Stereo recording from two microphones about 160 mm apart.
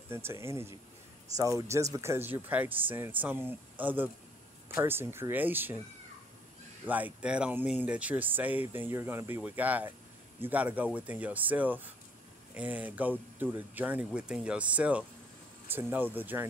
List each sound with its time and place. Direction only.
0.1 s speech: 15° right (ahead or behind)
6.9 s speech: 10° right (ahead or behind)